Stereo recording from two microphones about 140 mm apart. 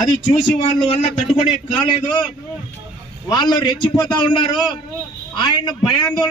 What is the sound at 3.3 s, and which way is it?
A man's voice, 30° left (ahead or behind).